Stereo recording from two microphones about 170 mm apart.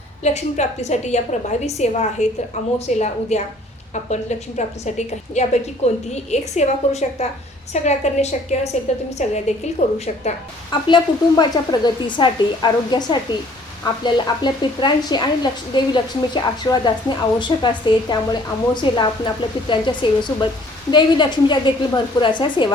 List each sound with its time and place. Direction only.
0.2 s a woman's voice: 40° left (ahead or behind)
10.7 s a woman's voice: 25° left (ahead or behind)